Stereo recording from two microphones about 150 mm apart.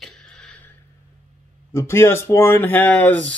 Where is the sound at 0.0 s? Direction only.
5° left (ahead or behind).